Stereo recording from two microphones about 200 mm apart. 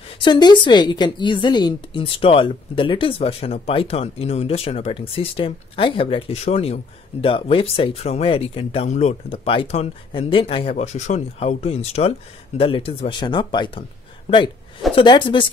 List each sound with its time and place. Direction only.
0.2 s a woman's voice: 20° left (ahead or behind)